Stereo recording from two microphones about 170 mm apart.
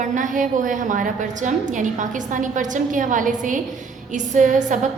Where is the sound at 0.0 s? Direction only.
50° right (ahead or behind).